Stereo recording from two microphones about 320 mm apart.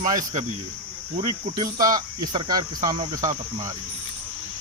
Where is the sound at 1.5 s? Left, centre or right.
Centre.